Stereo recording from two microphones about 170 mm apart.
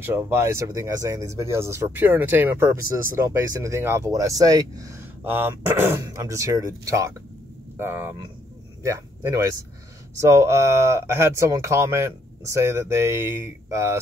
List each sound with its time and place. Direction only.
0.0 s speech: 15° right (ahead or behind)
8.8 s speech: 15° right (ahead or behind)